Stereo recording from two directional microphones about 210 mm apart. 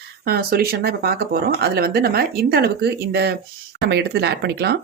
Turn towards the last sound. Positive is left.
turn(degrees=-50)  # may be behind; listen again after turning